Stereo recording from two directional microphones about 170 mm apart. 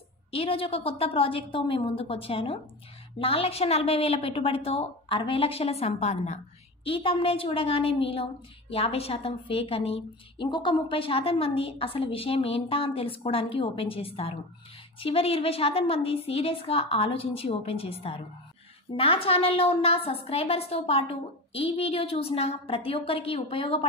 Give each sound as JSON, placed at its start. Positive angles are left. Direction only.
{"t": 0.3, "sound": "a woman's voice", "side_deg": 35}
{"t": 18.9, "sound": "a woman's voice", "side_deg": 35}